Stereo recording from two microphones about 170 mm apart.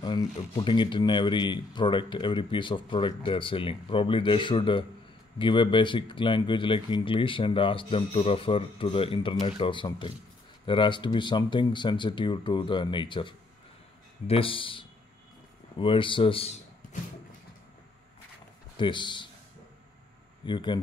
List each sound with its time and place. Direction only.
0.0 s speech: 25° left (ahead or behind)
18.8 s speech: 25° left (ahead or behind)
20.4 s speech: 25° left (ahead or behind)